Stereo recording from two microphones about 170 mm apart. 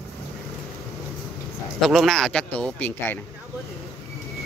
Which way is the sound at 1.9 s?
Centre (ahead or behind).